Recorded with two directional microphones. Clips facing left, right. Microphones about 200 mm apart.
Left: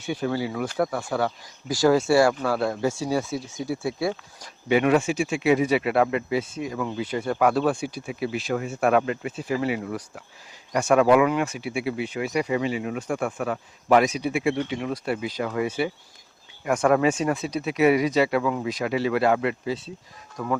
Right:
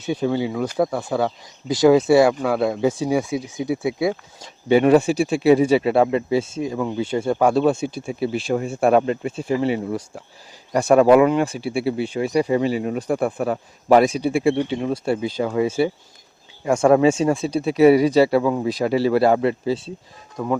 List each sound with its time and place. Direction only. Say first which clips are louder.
0.0 s speech: right 5 dB; 20° right (ahead or behind)
4.7 s speech: right 6 dB; 35° right (ahead or behind)